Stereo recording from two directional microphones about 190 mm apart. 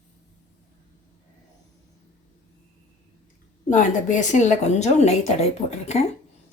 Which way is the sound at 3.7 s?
40° left (ahead or behind).